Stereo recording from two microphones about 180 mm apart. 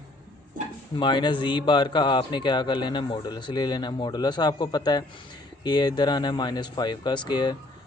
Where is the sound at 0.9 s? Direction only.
25° left (ahead or behind).